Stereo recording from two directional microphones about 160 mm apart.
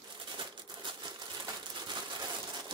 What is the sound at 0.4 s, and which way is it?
Crumpling, 30° right (ahead or behind).